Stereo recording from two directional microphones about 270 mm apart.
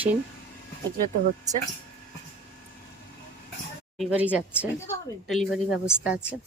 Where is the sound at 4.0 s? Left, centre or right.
Centre.